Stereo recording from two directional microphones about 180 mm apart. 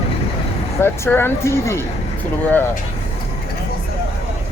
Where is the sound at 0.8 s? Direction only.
10° left (ahead or behind).